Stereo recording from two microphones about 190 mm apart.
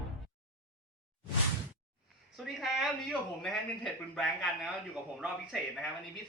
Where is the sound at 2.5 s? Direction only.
Centre (ahead or behind).